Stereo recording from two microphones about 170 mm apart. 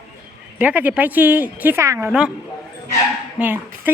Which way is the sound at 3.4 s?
10° right (ahead or behind).